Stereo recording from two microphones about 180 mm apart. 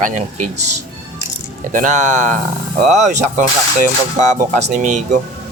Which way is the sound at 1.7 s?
45° right (ahead or behind).